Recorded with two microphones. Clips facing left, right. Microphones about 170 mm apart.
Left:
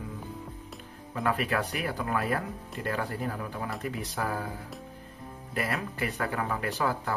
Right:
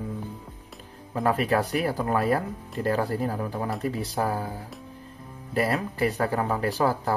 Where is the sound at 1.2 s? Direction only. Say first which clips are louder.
Right 5 dB; 35° right (ahead or behind).